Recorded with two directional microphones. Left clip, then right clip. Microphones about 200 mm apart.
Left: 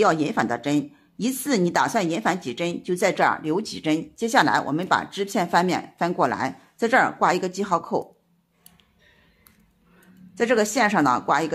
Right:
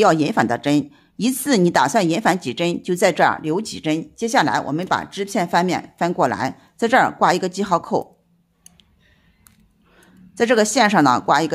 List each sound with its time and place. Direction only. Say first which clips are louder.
0.0 s a woman's voice: right 5 dB; 25° right (ahead or behind)
9.9 s speech: right 4 dB; 25° right (ahead or behind)